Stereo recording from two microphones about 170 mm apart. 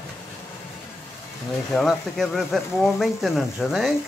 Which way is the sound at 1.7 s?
Centre (ahead or behind).